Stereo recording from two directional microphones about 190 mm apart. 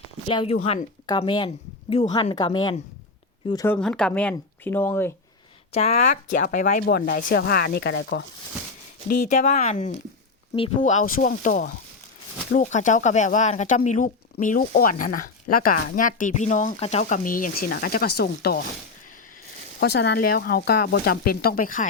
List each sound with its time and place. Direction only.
0.3 s speech: 30° left (ahead or behind)
3.8 s speech: 5° left (ahead or behind)
5.7 s speech: 35° left (ahead or behind)
6.8 s speech: 55° left (ahead or behind); by 8.3 s 70° left (ahead or behind)
9.0 s speech: 50° left (ahead or behind)
19.8 s speech: 60° left (ahead or behind)